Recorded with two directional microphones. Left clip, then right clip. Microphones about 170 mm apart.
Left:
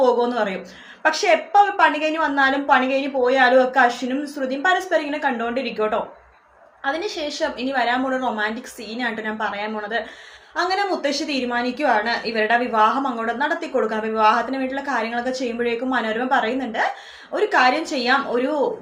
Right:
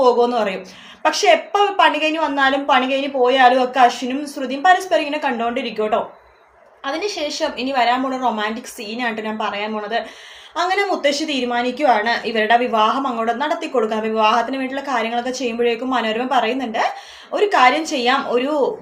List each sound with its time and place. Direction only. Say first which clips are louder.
0.0 s a woman's voice: right 3 dB; 15° right (ahead or behind)